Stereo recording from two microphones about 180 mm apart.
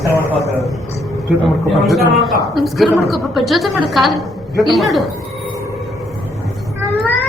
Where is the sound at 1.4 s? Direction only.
Centre (ahead or behind).